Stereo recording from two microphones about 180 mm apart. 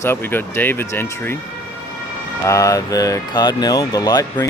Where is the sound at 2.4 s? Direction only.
20° left (ahead or behind).